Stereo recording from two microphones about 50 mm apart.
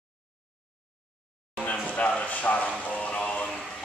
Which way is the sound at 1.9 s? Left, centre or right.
Left.